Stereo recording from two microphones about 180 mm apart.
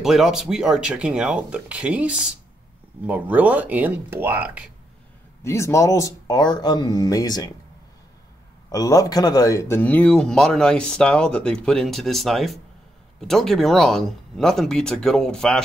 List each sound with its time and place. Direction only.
0.0 s speech: centre (ahead or behind)
5.4 s speech: 15° left (ahead or behind)
8.7 s speech: 20° left (ahead or behind); by 15.6 s 5° left (ahead or behind)